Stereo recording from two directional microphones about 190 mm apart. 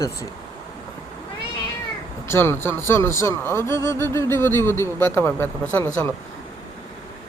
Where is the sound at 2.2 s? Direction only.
10° left (ahead or behind).